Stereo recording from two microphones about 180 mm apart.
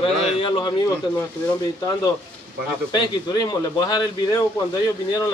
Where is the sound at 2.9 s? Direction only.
20° left (ahead or behind).